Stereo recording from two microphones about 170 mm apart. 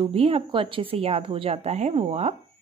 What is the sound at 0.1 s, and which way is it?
Speech, 35° right (ahead or behind).